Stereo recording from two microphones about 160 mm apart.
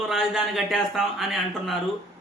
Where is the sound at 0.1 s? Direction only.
Centre (ahead or behind).